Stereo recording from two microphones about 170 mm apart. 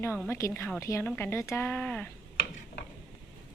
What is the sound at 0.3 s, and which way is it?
Speech, 15° left (ahead or behind).